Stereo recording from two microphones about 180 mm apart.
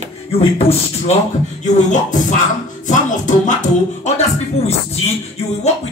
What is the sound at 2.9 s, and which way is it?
Music, 45° left (ahead or behind).